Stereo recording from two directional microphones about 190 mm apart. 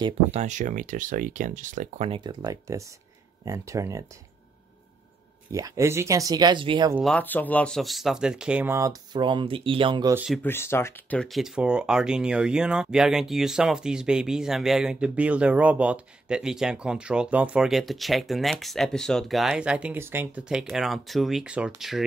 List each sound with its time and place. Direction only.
0.0 s speech: 35° right (ahead or behind)
2.0 s speech: 25° right (ahead or behind)
5.5 s speech: 15° right (ahead or behind)
7.1 s speech: 10° left (ahead or behind); by 10.1 s 25° right (ahead or behind)
10.1 s speech: 5° right (ahead or behind)
10.4 s speech: 10° left (ahead or behind)